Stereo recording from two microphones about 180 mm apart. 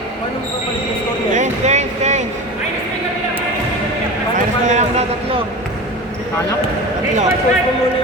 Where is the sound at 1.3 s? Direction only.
40° right (ahead or behind).